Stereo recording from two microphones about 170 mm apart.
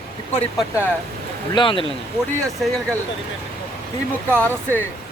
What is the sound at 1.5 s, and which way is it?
Speech, 30° left (ahead or behind).